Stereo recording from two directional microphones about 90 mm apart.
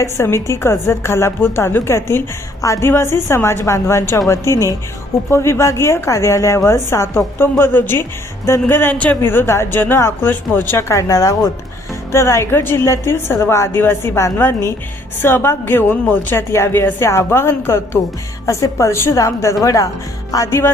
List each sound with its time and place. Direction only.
0.0 s a woman's voice: 30° left (ahead or behind)
18.4 s speech: 35° left (ahead or behind)